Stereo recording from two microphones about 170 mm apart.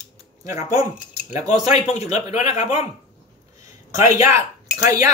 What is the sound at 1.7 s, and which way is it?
Speech, 40° left (ahead or behind).